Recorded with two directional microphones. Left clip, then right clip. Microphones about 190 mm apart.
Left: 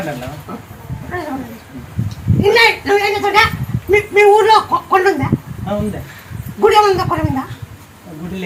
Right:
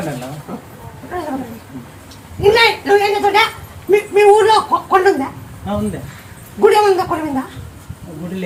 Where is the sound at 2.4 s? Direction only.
20° right (ahead or behind).